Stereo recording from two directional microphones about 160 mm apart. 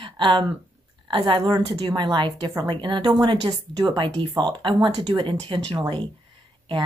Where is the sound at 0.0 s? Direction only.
30° right (ahead or behind).